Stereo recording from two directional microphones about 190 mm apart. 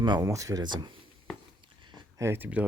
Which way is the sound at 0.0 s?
20° right (ahead or behind).